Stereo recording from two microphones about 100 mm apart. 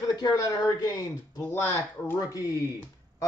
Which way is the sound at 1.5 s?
20° left (ahead or behind).